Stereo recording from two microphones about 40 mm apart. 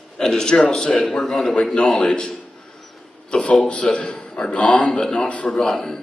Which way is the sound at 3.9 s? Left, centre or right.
Left.